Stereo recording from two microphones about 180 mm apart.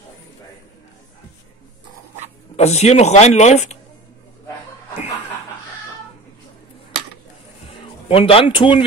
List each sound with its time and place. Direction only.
2.5 s speech: 40° left (ahead or behind)
8.1 s speech: 30° left (ahead or behind)